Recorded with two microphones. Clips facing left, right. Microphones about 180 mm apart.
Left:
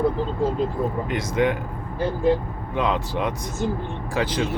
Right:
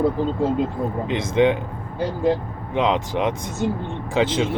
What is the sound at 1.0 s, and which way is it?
Speech, 25° right (ahead or behind).